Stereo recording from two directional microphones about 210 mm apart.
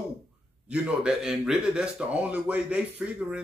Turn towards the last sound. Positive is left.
turn(degrees=-5)  # may be behind; listen again after turning